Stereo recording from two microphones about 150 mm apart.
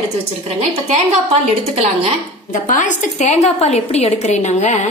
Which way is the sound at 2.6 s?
55° left (ahead or behind).